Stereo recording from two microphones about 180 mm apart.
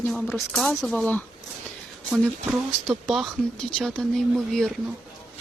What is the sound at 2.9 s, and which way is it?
Speech, centre (ahead or behind).